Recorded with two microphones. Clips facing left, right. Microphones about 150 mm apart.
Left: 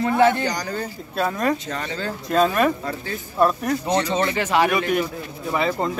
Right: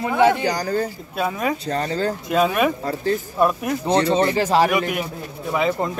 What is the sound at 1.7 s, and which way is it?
Speech, 35° right (ahead or behind).